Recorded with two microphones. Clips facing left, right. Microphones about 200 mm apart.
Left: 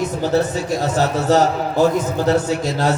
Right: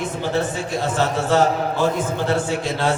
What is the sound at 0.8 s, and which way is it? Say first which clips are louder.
A man's voice: left 3 dB; 40° left (ahead or behind).